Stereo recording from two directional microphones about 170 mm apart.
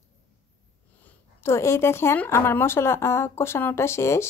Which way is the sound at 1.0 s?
15° left (ahead or behind).